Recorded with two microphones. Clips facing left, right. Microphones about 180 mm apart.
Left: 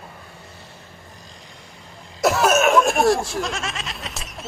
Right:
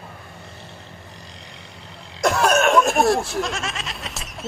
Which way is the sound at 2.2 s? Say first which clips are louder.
Left 1 dB; 5° left (ahead or behind).